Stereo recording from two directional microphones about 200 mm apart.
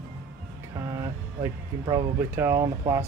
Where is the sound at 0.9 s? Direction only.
15° right (ahead or behind).